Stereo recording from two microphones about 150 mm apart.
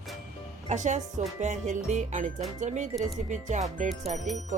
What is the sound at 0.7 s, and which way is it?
Music, 50° right (ahead or behind).